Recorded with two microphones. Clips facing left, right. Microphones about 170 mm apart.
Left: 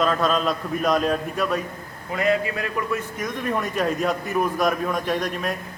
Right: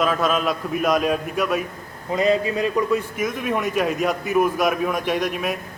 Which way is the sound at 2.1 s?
25° right (ahead or behind).